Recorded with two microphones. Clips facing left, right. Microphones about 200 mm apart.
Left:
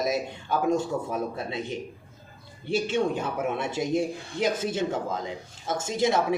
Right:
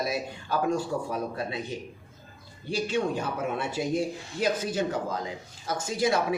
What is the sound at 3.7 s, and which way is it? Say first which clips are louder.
Speech: left 2 dB; 25° left (ahead or behind).